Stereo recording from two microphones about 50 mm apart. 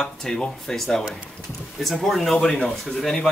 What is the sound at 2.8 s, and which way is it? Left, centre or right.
Speech, centre.